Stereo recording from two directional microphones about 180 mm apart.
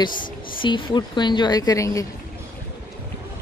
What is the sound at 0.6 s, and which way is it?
A woman's voice, 25° left (ahead or behind).